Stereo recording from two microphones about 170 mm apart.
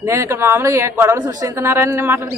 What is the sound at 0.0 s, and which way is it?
A woman's voice, 15° right (ahead or behind).